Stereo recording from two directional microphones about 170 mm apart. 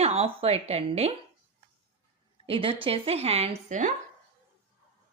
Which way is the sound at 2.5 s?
30° right (ahead or behind).